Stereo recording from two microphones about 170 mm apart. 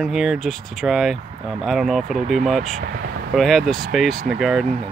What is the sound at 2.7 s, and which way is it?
Speech, 80° right.